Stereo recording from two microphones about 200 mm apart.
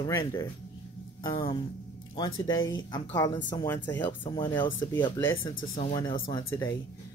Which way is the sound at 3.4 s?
15° left (ahead or behind).